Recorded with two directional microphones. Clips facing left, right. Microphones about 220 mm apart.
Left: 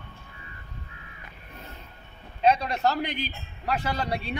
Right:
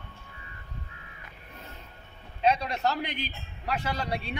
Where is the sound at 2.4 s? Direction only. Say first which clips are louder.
Left 3 dB; 40° left (ahead or behind).